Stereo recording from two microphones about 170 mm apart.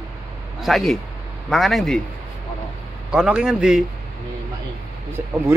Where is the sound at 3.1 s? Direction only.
5° right (ahead or behind).